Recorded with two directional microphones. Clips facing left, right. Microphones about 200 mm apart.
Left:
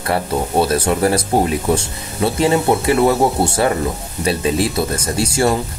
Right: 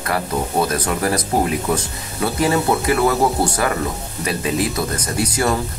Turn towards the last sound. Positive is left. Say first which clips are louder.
# left 3 dB
turn(degrees=25)  # may be behind; listen again after turning